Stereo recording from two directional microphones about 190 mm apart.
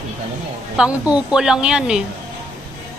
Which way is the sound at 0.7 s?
5° right (ahead or behind).